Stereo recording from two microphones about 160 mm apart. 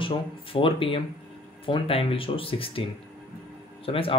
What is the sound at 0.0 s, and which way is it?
Speech, 35° left (ahead or behind).